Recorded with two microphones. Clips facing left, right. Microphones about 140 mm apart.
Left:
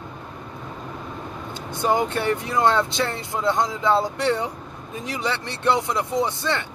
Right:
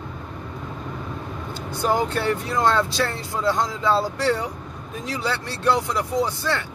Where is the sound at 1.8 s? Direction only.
20° left (ahead or behind).